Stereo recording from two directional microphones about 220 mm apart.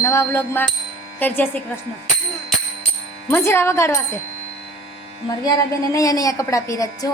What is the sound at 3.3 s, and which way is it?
Speech, 10° left (ahead or behind).